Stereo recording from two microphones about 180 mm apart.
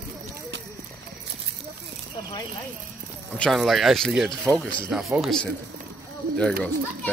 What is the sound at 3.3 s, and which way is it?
Speech, 5° left (ahead or behind).